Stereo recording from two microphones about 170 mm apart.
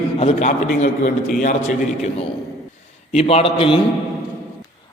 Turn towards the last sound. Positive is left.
turn(degrees=30)  # may be behind; listen again after turning